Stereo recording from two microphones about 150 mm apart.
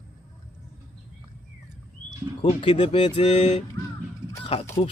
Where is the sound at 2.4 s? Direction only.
35° left (ahead or behind).